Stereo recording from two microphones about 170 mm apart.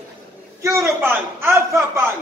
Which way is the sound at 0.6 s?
15° right (ahead or behind).